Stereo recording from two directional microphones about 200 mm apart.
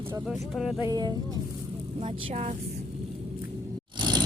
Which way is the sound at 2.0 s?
30° right (ahead or behind).